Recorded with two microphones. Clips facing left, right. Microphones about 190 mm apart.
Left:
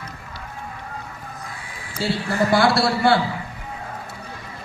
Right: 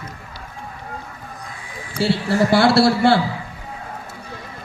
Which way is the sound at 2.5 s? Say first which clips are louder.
Right 4 dB; 25° right (ahead or behind).